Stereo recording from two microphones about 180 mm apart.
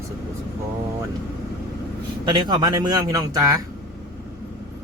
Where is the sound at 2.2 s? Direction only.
25° right (ahead or behind).